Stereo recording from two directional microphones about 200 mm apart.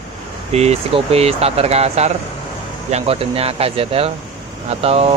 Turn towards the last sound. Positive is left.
turn(degrees=-30)  # may be behind; listen again after turning